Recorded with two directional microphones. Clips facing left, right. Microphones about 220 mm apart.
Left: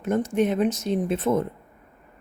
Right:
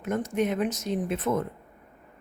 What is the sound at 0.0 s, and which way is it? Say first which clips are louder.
Speech: left 4 dB; 30° left (ahead or behind).